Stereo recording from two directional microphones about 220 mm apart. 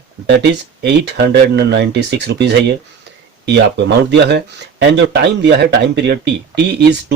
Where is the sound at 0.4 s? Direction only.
50° right (ahead or behind).